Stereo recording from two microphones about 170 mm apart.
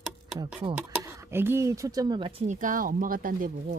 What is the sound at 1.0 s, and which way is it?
Speech, 15° right (ahead or behind).